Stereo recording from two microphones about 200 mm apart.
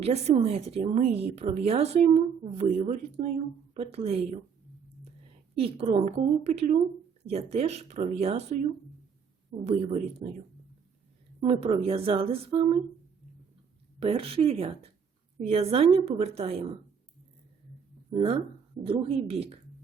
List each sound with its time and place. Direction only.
0.0 s speech: 30° right (ahead or behind)
5.5 s speech: 30° right (ahead or behind)
9.6 s speech: 35° right (ahead or behind)
11.3 s a woman's voice: 30° right (ahead or behind)
14.0 s a woman's voice: 30° right (ahead or behind)
18.9 s speech: 30° right (ahead or behind)